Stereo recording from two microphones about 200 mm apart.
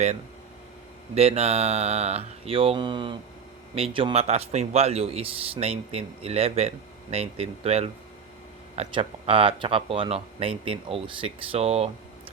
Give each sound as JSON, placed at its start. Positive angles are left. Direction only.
{"t": 1.1, "sound": "a man's voice", "side_deg": -30}